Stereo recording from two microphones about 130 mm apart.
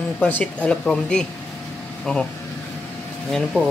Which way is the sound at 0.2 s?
10° left (ahead or behind).